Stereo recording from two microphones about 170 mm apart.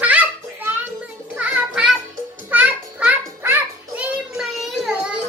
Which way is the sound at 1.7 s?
5° right (ahead or behind).